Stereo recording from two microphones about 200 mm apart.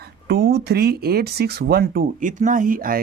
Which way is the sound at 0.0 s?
55° right (ahead or behind).